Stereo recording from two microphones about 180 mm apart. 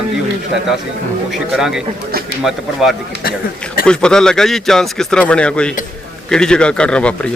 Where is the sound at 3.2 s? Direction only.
55° left (ahead or behind).